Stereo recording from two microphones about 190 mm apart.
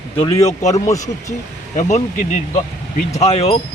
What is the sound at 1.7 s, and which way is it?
Speech, 40° left (ahead or behind).